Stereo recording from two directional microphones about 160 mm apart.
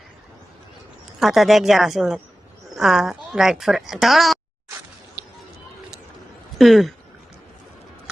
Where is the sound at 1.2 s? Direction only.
Centre (ahead or behind).